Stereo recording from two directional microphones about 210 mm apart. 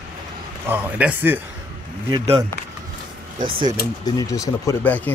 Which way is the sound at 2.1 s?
20° right (ahead or behind).